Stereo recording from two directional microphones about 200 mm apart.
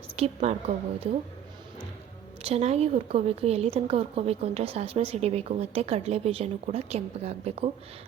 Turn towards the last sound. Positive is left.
turn(degrees=-30)  # may be behind; listen again after turning